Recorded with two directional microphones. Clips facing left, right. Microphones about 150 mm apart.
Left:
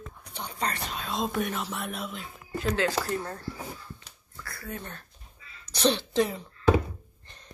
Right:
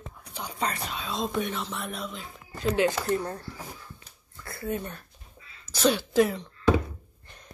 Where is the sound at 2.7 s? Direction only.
25° right (ahead or behind).